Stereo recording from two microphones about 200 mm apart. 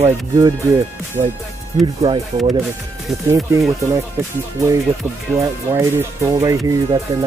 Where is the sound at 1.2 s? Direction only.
35° right (ahead or behind).